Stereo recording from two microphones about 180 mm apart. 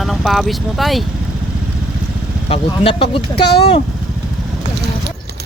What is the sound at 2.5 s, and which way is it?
Speech, 30° left (ahead or behind).